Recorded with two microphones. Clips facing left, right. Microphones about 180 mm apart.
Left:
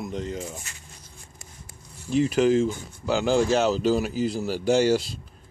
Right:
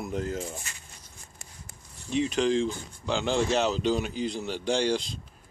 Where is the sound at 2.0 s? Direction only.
Centre (ahead or behind).